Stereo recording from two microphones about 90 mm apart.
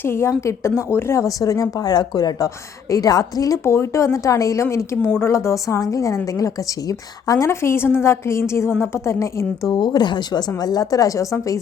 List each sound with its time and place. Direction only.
0.0 s a woman's voice: 30° left (ahead or behind)
9.7 s a woman's voice: 55° left (ahead or behind); by 11.6 s 40° left (ahead or behind)